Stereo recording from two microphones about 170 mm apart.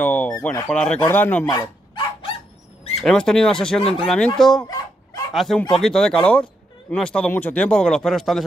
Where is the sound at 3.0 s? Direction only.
5° left (ahead or behind).